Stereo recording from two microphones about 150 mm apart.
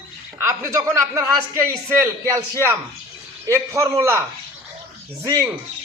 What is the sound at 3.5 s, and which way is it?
Speech, 20° right (ahead or behind).